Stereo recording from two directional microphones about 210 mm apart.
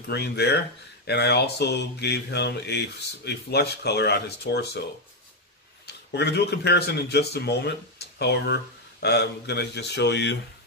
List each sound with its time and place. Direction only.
0.1 s speech: 50° left (ahead or behind)
5.9 s speech: 50° left (ahead or behind)